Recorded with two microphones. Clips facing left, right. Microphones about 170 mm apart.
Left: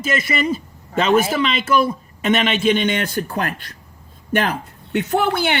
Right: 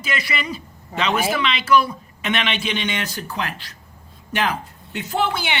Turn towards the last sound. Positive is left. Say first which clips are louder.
# left 4 dB
turn(degrees=55)  # may be behind; listen again after turning